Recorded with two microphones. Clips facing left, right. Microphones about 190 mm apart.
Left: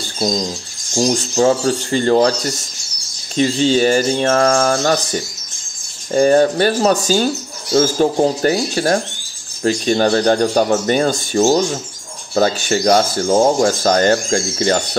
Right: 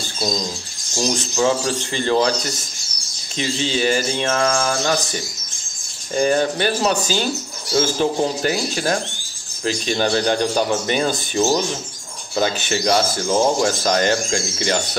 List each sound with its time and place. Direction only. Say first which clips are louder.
0.9 s speech: left 5 dB; 30° left (ahead or behind)
3.3 s speech: left 8 dB; 40° left (ahead or behind)
6.1 s speech: left 6 dB; 40° left (ahead or behind)
9.6 s speech: left 6 dB; 45° left (ahead or behind)